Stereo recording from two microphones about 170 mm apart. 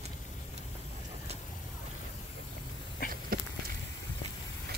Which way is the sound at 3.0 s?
55° left (ahead or behind).